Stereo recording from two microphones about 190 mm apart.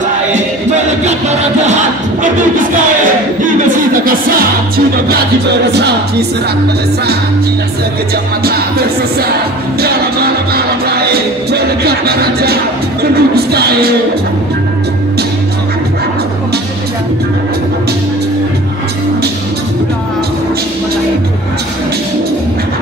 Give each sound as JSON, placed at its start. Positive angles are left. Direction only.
{"t": 2.5, "sound": "music", "side_deg": -45}
{"t": 4.0, "sound": "music", "side_deg": -50}
{"t": 10.5, "sound": "music", "side_deg": -55}